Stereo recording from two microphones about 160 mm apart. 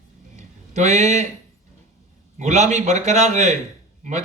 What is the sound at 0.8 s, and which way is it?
Speech, 45° right (ahead or behind).